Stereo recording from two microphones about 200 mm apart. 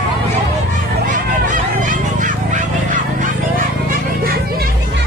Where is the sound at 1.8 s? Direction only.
40° right (ahead or behind).